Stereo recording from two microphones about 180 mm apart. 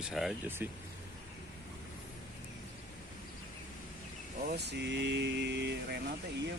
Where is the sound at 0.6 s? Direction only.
10° right (ahead or behind).